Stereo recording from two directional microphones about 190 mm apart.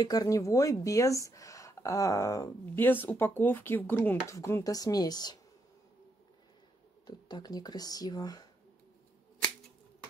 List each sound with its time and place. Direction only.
0.0 s speech: 20° left (ahead or behind)
7.1 s speech: 20° left (ahead or behind)